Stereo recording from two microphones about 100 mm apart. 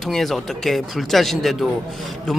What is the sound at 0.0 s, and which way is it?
Speech, centre (ahead or behind).